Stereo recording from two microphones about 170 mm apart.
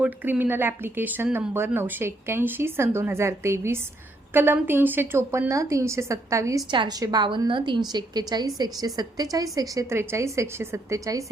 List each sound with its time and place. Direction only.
0.0 s a woman's voice: 10° right (ahead or behind)